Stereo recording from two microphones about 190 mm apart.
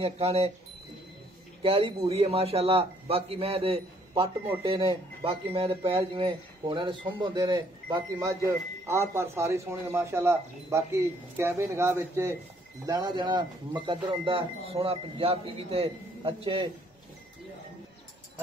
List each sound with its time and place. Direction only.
0.0 s a man's voice: 30° right (ahead or behind)
1.6 s a man's voice: 30° right (ahead or behind)